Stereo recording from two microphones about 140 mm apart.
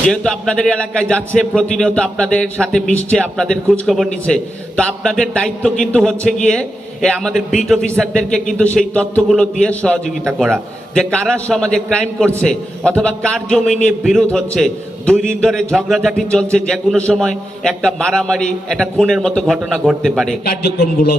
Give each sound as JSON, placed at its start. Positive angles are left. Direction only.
{"t": 0.1, "sound": "a man's voice", "side_deg": 5}
{"t": 20.4, "sound": "speech", "side_deg": 90}